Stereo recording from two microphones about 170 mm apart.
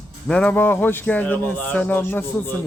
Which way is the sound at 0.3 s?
5° left (ahead or behind).